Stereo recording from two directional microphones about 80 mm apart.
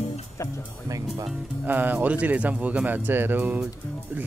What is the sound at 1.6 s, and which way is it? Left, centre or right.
Speech, right.